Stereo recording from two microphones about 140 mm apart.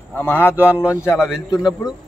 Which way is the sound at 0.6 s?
10° right (ahead or behind).